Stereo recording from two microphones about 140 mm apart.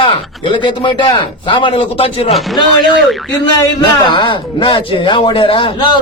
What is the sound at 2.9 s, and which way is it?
Speech, centre (ahead or behind).